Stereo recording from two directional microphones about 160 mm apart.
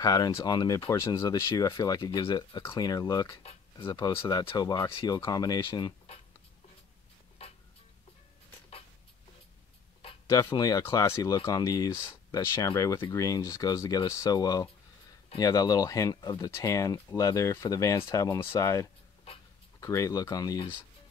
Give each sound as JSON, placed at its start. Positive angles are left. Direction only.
{"t": 0.0, "sound": "speech", "side_deg": 25}
{"t": 10.2, "sound": "speech", "side_deg": 20}